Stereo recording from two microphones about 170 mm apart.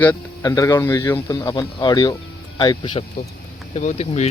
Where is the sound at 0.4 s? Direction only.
20° left (ahead or behind).